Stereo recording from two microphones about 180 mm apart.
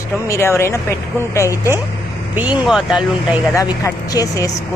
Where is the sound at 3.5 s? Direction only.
20° left (ahead or behind).